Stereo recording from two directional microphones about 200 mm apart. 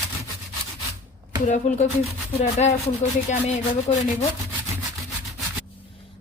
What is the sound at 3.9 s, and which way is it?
Speech, 30° left (ahead or behind).